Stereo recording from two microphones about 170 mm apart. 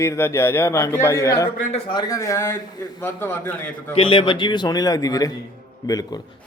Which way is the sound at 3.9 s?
30° left (ahead or behind).